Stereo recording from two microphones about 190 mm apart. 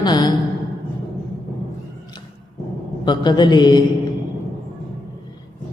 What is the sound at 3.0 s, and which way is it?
Mantra, 20° left (ahead or behind).